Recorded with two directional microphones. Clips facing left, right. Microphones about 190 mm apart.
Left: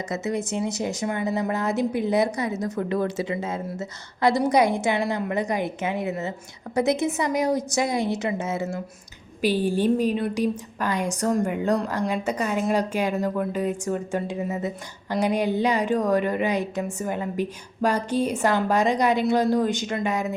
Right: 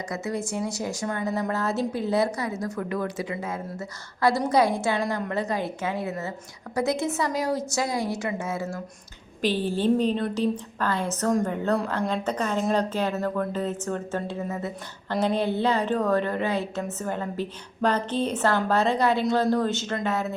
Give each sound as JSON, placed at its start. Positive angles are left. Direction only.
{"t": 0.1, "sound": "a woman's voice", "side_deg": 20}
{"t": 11.3, "sound": "a woman's voice", "side_deg": 0}
{"t": 11.5, "sound": "a woman's voice", "side_deg": 15}